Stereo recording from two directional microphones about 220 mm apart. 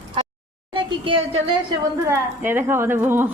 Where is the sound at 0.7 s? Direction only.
25° right (ahead or behind).